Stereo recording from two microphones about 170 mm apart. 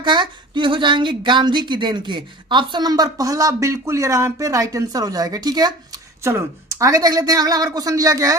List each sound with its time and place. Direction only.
0.0 s speech: 25° right (ahead or behind)